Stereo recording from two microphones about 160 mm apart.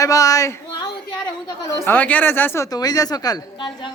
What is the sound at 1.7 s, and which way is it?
Speech, 10° left (ahead or behind).